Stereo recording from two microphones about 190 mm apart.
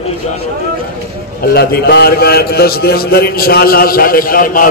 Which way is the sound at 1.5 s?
60° left (ahead or behind).